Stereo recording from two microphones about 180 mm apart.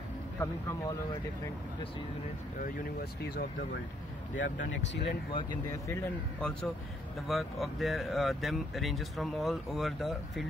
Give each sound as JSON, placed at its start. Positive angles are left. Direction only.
{"t": 0.4, "sound": "speech", "side_deg": 15}
{"t": 2.6, "sound": "speech", "side_deg": 55}
{"t": 4.4, "sound": "speech", "side_deg": 80}
{"t": 5.3, "sound": "speech", "side_deg": 20}
{"t": 7.2, "sound": "speech", "side_deg": 0}